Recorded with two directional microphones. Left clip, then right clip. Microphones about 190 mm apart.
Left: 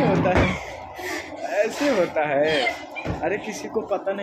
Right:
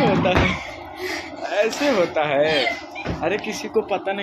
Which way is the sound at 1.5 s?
Centre (ahead or behind).